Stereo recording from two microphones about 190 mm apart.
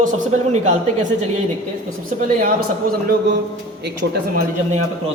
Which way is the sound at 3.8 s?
60° right (ahead or behind).